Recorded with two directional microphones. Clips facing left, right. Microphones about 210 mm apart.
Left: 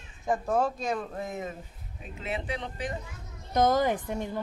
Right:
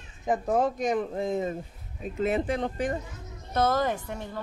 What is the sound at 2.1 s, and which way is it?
Speech, 45° right (ahead or behind).